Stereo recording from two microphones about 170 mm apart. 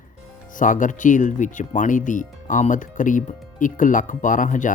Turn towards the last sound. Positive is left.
turn(degrees=50)  # may be behind; listen again after turning